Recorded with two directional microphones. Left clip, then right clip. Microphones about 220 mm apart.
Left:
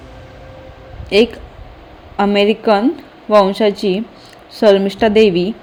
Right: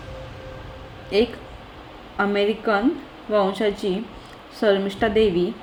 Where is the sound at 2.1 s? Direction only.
45° left (ahead or behind).